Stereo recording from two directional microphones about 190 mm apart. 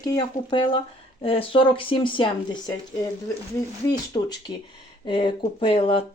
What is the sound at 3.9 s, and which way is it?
Speech, 20° left (ahead or behind).